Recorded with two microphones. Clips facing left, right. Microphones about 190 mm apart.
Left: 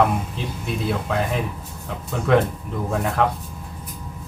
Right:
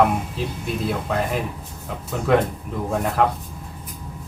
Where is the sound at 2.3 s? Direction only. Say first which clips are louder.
Even; centre (ahead or behind).